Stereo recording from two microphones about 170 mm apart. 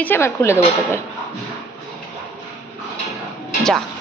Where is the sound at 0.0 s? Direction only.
15° left (ahead or behind).